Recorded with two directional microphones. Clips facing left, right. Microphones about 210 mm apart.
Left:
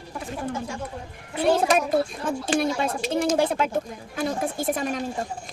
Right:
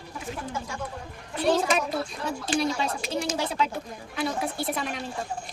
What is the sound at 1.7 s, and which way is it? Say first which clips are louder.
Speech: left 5 dB; 50° left (ahead or behind).